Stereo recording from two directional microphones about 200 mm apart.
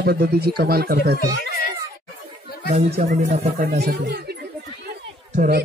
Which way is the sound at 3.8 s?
55° right (ahead or behind).